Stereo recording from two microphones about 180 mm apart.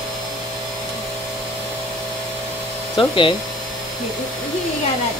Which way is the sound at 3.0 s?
30° left (ahead or behind).